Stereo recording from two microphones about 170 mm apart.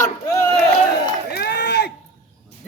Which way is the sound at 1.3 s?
75° left (ahead or behind).